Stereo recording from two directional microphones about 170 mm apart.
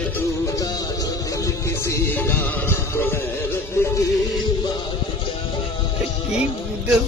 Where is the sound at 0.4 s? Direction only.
20° left (ahead or behind).